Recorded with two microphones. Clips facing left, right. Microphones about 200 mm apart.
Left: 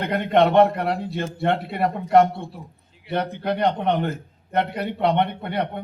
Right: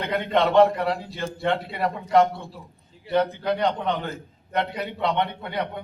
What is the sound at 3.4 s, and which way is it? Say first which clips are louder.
A man's voice: left 2 dB; 55° left (ahead or behind).